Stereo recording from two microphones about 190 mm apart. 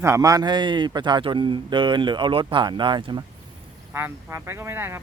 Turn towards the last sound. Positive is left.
turn(degrees=-15)  # may be behind; listen again after turning